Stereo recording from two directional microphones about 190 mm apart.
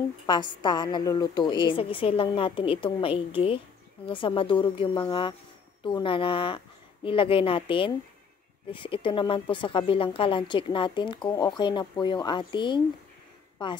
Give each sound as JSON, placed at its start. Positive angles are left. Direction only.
{"t": 0.3, "sound": "a woman's voice", "side_deg": 25}